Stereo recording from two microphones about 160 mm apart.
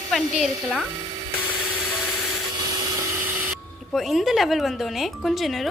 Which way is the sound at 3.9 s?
Centre (ahead or behind).